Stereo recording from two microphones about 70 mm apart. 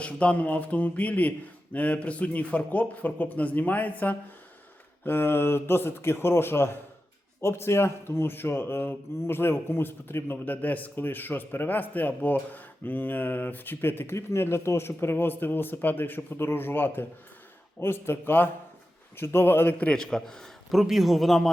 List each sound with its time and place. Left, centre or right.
0.0 s a man's voice: centre
20.0 s a man's voice: centre